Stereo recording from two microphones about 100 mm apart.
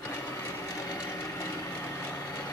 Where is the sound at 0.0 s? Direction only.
25° left (ahead or behind).